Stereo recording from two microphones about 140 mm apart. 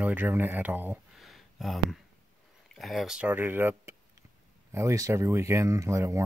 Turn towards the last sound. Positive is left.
turn(degrees=-20)  # may be behind; listen again after turning